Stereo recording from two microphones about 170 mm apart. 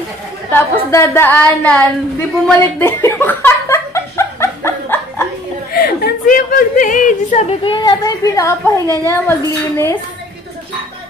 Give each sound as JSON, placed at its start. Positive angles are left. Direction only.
{"t": 0.5, "sound": "a woman's voice", "side_deg": 15}
{"t": 2.4, "sound": "a sound", "side_deg": 15}
{"t": 5.7, "sound": "a woman's voice", "side_deg": 60}